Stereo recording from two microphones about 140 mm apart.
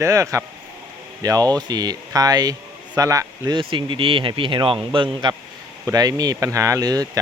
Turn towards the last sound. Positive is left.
turn(degrees=-25)  # may be behind; listen again after turning